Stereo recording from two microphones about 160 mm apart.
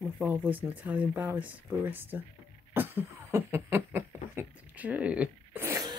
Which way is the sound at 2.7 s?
15° right (ahead or behind).